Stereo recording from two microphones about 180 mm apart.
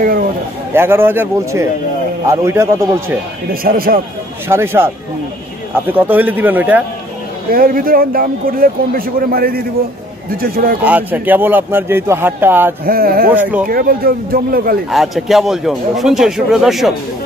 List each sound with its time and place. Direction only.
0.7 s speech: 10° right (ahead or behind)
3.6 s speech: 55° right (ahead or behind)
4.5 s speech: 15° right (ahead or behind)
7.5 s a man's voice: 55° right (ahead or behind)
10.8 s speech: 10° right (ahead or behind)
12.8 s speech: 55° right (ahead or behind)
13.3 s speech: 10° right (ahead or behind)
13.7 s speech: 55° right (ahead or behind)
14.9 s speech: centre (ahead or behind)